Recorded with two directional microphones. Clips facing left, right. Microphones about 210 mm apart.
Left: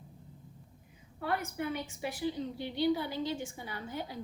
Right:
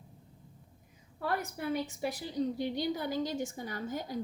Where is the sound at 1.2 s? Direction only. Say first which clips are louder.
Even; 40° right (ahead or behind).